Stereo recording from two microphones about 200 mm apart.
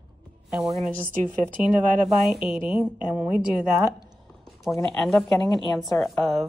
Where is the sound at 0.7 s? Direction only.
35° right (ahead or behind).